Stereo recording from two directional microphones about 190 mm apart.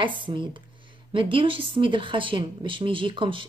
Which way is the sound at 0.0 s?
25° right (ahead or behind).